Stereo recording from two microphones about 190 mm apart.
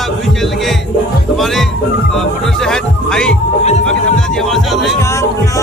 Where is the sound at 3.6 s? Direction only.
35° left (ahead or behind).